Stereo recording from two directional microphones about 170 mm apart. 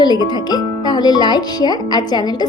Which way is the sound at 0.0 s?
25° left (ahead or behind).